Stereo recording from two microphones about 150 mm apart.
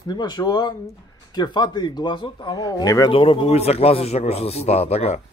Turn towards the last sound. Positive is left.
turn(degrees=45)  # may be behind; listen again after turning